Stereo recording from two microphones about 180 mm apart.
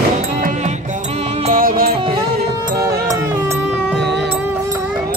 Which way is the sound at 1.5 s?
50° right (ahead or behind).